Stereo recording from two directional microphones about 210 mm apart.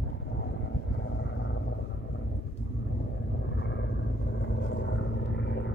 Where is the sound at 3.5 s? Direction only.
55° left (ahead or behind).